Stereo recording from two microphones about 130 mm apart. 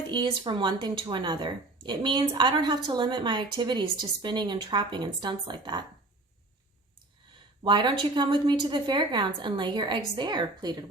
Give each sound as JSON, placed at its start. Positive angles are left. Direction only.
{"t": 0.1, "sound": "speech", "side_deg": -40}
{"t": 7.6, "sound": "speech", "side_deg": -35}